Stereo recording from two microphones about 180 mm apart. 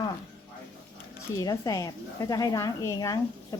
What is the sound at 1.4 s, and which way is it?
Speech, 20° left (ahead or behind).